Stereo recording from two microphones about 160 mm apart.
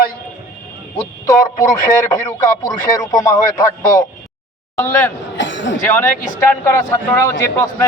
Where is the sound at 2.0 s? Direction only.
25° left (ahead or behind).